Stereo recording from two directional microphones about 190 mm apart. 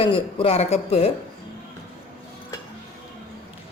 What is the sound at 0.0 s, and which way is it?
Speech, 30° left (ahead or behind).